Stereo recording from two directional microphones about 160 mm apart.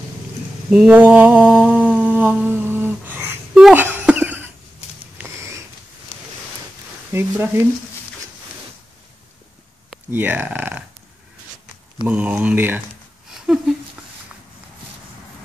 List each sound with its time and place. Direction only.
0.7 s mantra: 10° right (ahead or behind)
5.1 s a sound: 15° right (ahead or behind)
7.1 s speech: 15° right (ahead or behind)
10.1 s speech: 10° right (ahead or behind)
12.1 s speech: 10° right (ahead or behind)
13.3 s a sound: centre (ahead or behind)